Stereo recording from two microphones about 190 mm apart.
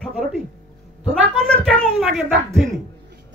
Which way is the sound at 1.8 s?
Centre (ahead or behind).